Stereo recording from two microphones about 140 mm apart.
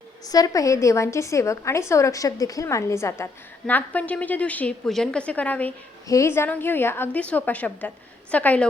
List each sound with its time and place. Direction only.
0.3 s a woman's voice: 25° left (ahead or behind); by 8.6 s 10° left (ahead or behind)